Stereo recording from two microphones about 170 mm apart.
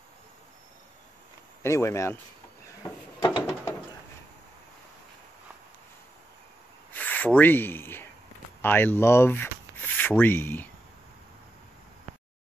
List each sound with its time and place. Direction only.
1.6 s speech: 15° left (ahead or behind)
2.8 s drawer open or close: 20° left (ahead or behind)
6.9 s rub: 10° left (ahead or behind)